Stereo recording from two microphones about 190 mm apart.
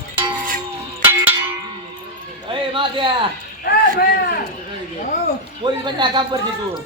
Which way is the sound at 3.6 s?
55° left (ahead or behind).